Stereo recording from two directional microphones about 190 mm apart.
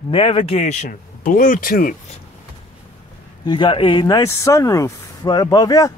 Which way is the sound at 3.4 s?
25° left (ahead or behind).